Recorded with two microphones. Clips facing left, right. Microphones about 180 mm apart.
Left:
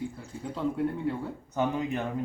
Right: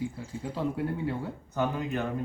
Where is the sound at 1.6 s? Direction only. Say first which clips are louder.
Left 1 dB; 20° left (ahead or behind).